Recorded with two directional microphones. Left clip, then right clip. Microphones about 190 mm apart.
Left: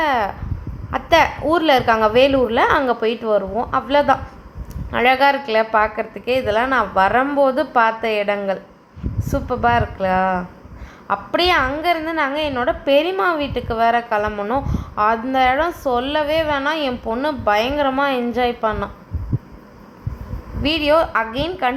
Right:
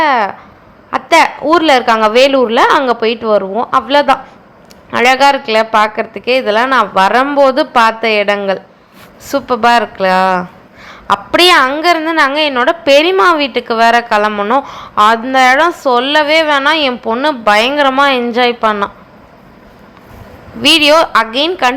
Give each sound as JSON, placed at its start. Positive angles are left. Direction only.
{"t": 0.0, "sound": "a sound", "side_deg": -10}
{"t": 0.9, "sound": "a woman's voice", "side_deg": -10}
{"t": 20.6, "sound": "a woman's voice", "side_deg": -25}